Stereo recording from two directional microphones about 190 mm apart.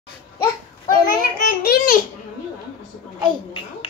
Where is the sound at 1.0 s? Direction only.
50° left (ahead or behind).